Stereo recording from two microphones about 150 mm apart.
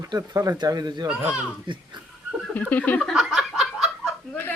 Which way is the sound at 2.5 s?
10° left (ahead or behind).